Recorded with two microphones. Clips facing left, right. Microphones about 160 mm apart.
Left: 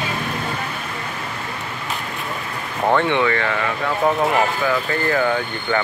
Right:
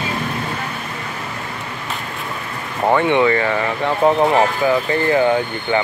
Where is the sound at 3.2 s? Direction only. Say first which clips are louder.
Right 4 dB; 25° right (ahead or behind).